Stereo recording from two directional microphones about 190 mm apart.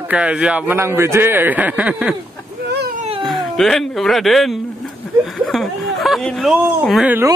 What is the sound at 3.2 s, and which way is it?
Speech, centre (ahead or behind).